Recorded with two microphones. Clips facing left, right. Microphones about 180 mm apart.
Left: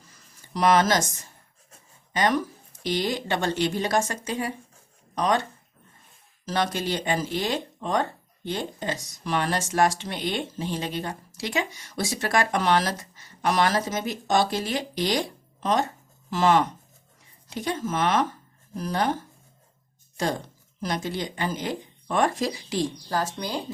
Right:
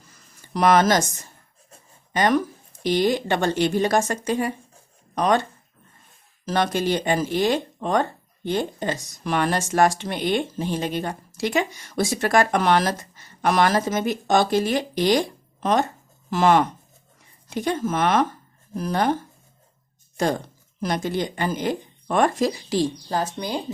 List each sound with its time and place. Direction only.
0.5 s speech: 50° right (ahead or behind)
2.1 s speech: 55° right (ahead or behind)
6.4 s speech: 55° right (ahead or behind)
16.3 s speech: 55° right (ahead or behind)
20.8 s speech: 50° right (ahead or behind)
23.0 s speech: 20° right (ahead or behind)